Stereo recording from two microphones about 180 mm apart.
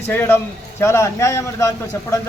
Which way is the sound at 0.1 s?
10° left (ahead or behind).